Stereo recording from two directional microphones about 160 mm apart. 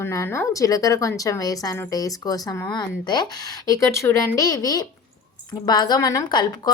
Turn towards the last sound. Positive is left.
turn(degrees=25)  # may be behind; listen again after turning